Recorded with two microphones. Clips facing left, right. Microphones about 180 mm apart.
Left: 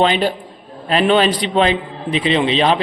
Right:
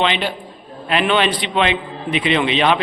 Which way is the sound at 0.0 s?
40° left (ahead or behind).